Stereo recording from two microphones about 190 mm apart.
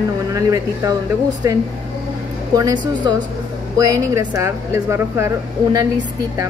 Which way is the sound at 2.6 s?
20° right (ahead or behind).